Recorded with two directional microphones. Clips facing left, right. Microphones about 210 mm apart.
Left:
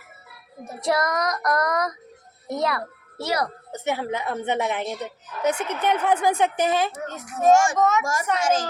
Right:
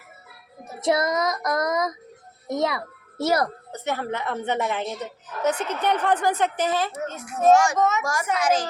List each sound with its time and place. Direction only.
0.8 s child singing: 20° right (ahead or behind)
3.2 s a child's voice: 45° right (ahead or behind)
3.8 s speech: 15° left (ahead or behind)
7.3 s speech: centre (ahead or behind)
8.0 s a woman's voice: 25° left (ahead or behind)